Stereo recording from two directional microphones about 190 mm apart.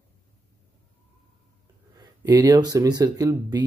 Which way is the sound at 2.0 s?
20° right (ahead or behind).